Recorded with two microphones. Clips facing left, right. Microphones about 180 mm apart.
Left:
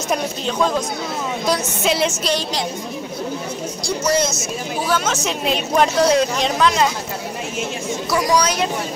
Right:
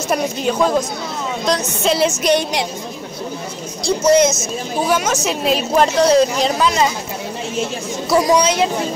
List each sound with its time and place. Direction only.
0.1 s speech: 5° right (ahead or behind)
1.4 s speech: 5° left (ahead or behind)
3.8 s speech: 20° right (ahead or behind); by 6.9 s 5° right (ahead or behind)
8.1 s speech: 25° right (ahead or behind)